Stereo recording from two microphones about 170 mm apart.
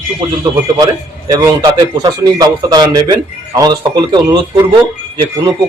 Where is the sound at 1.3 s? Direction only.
25° right (ahead or behind).